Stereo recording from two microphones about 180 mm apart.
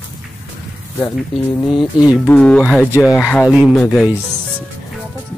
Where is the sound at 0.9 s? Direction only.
10° left (ahead or behind).